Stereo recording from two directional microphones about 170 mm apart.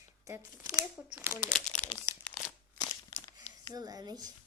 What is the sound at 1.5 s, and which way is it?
Speech, 5° left (ahead or behind).